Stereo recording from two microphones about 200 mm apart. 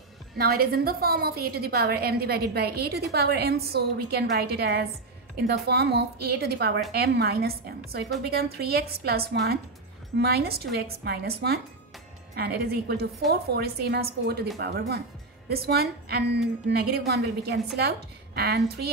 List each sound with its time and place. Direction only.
0.4 s a woman's voice: 50° right (ahead or behind)